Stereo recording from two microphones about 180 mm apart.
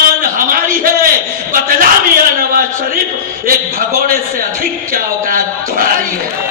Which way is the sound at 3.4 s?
50° right (ahead or behind).